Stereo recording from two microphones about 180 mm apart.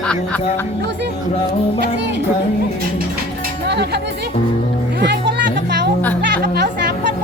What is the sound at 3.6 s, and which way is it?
Music, 70° right (ahead or behind).